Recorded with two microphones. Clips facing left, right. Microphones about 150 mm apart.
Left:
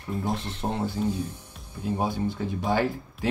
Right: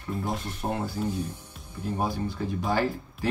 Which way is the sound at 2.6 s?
20° left (ahead or behind).